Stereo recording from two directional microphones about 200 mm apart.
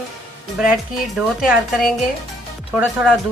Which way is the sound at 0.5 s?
5° right (ahead or behind).